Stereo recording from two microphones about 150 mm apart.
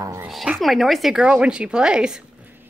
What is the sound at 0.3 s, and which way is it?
A woman's voice, centre (ahead or behind).